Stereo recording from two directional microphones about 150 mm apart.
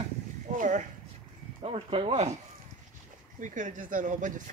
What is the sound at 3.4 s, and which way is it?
Speech, 60° right (ahead or behind).